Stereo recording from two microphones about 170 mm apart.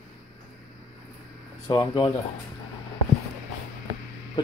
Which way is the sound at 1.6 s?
25° left (ahead or behind).